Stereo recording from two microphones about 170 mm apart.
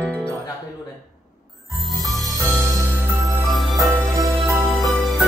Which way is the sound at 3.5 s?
Centre (ahead or behind).